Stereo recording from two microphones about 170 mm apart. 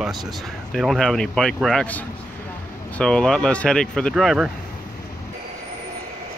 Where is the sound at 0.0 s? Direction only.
Centre (ahead or behind).